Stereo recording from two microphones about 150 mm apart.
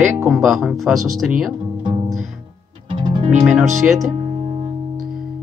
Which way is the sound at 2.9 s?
35° right (ahead or behind).